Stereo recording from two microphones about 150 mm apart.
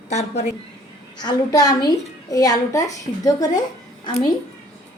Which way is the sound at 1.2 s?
25° left (ahead or behind).